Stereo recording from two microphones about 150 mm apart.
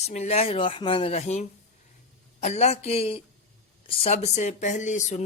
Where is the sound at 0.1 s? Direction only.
45° left (ahead or behind).